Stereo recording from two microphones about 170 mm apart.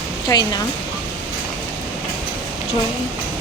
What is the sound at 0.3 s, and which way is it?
Speech, 25° left (ahead or behind).